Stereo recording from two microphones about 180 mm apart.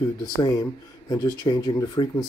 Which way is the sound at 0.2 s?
20° left (ahead or behind).